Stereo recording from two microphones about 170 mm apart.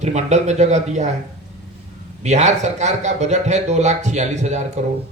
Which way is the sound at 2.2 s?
45° right (ahead or behind).